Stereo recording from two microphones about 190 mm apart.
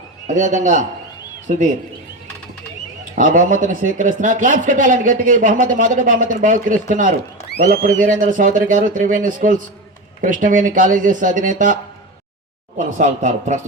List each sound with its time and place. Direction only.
0.3 s speech: 40° right (ahead or behind)
3.2 s speech: 40° right (ahead or behind)